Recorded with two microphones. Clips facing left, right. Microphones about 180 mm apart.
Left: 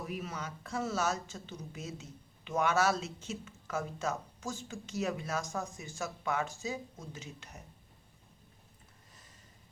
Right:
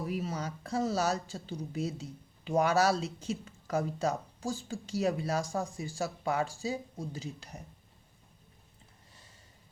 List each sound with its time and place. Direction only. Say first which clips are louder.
0.0 s speech: right 5 dB; 35° right (ahead or behind)